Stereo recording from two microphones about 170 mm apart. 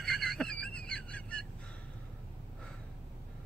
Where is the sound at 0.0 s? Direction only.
5° left (ahead or behind).